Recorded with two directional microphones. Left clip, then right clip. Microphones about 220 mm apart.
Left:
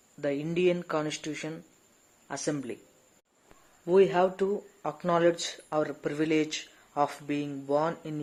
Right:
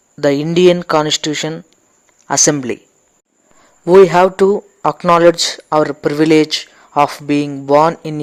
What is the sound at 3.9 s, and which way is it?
Speech, 40° right (ahead or behind).